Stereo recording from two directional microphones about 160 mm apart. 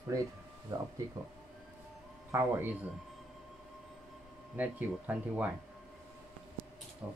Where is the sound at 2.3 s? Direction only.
20° right (ahead or behind).